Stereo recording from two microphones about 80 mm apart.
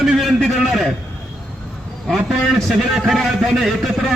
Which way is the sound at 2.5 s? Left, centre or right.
Centre.